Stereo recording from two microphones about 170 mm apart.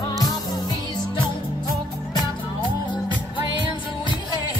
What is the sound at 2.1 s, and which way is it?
Music, 25° left (ahead or behind).